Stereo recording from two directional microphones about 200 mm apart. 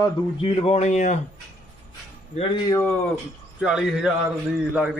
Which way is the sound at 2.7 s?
10° left (ahead or behind).